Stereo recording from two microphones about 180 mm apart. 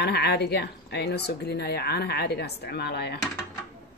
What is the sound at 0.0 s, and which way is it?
Speech, 70° left (ahead or behind).